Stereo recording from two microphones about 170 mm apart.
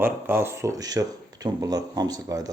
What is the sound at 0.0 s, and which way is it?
Speech, 15° right (ahead or behind).